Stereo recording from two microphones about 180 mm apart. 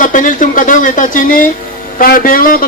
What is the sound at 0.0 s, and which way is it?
Speech, 45° left (ahead or behind).